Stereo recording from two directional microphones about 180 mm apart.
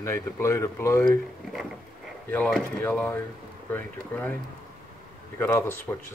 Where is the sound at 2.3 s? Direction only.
10° left (ahead or behind).